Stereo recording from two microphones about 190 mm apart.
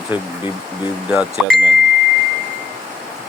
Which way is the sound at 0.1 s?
10° right (ahead or behind).